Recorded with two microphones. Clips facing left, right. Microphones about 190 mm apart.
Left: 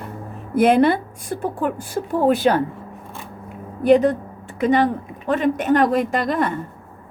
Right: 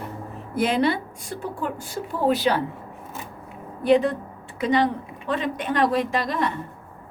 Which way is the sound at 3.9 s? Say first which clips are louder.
Left 4 dB; 45° left (ahead or behind).